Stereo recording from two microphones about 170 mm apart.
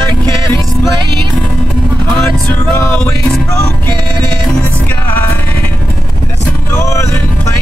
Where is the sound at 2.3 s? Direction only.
15° left (ahead or behind).